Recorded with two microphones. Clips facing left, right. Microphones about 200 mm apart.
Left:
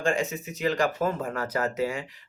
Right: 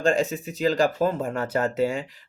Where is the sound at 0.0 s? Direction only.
35° right (ahead or behind).